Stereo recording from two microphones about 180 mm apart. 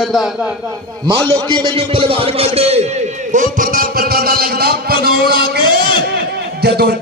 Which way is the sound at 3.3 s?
50° right (ahead or behind).